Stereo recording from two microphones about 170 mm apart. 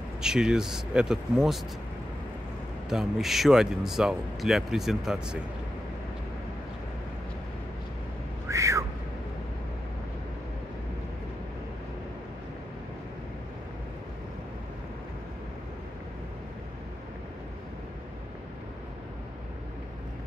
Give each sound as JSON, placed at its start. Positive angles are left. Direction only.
{"t": 0.2, "sound": "speech", "side_deg": -5}
{"t": 2.9, "sound": "speech", "side_deg": 0}
{"t": 8.5, "sound": "a sound", "side_deg": -20}